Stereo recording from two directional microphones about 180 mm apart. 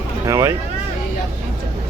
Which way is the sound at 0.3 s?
15° right (ahead or behind).